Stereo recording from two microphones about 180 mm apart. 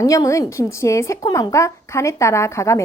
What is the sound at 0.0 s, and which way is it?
Speech, 20° left (ahead or behind).